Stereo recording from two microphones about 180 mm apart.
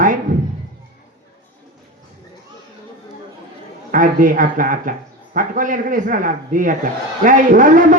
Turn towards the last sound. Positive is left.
turn(degrees=-45)  # may be behind; listen again after turning